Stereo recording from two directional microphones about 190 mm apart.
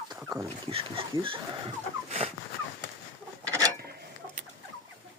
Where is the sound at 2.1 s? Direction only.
30° right (ahead or behind).